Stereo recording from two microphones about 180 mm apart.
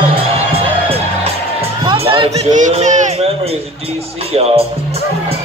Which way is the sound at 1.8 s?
30° right (ahead or behind).